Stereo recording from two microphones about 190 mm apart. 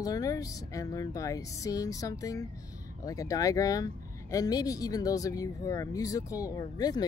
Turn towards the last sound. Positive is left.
turn(degrees=20)  # may be behind; listen again after turning